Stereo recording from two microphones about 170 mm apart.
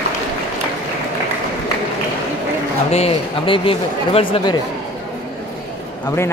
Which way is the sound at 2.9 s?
35° left (ahead or behind).